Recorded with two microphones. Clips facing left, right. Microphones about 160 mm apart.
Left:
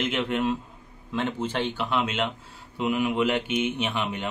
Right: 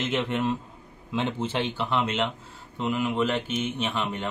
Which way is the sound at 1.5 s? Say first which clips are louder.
Even; 10° right (ahead or behind).